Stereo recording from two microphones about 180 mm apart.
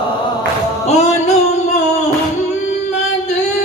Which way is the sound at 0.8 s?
40° left (ahead or behind).